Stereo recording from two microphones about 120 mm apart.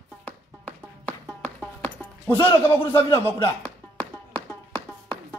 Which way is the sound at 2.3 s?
40° left (ahead or behind).